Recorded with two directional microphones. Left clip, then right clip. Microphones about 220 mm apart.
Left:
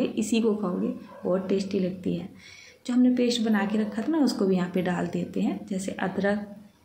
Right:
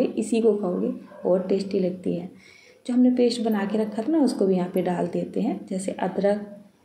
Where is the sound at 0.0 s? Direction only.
10° left (ahead or behind).